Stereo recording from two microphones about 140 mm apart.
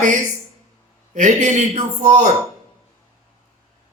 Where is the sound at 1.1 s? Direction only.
60° right (ahead or behind).